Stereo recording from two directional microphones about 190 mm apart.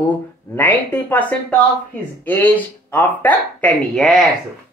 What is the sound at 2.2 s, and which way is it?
Speech, 10° left (ahead or behind).